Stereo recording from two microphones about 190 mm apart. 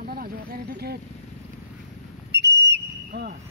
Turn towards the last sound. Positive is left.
turn(degrees=-55)  # may be behind; listen again after turning